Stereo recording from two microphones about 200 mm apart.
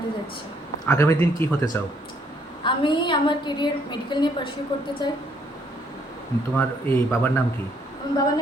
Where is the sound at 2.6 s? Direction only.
25° left (ahead or behind).